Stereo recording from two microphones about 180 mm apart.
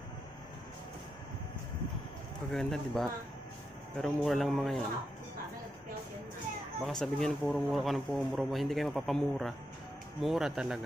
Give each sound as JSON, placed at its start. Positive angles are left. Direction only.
{"t": 2.5, "sound": "speech", "side_deg": 0}
{"t": 6.8, "sound": "speech", "side_deg": 5}